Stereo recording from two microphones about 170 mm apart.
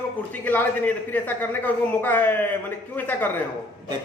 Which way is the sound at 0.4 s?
10° left (ahead or behind).